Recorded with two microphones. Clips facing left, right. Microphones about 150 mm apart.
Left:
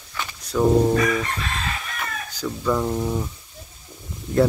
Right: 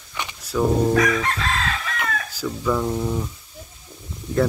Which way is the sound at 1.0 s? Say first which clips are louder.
Right 2 dB; 75° right (ahead or behind).